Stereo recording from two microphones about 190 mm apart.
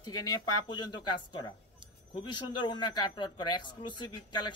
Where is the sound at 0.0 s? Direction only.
20° left (ahead or behind).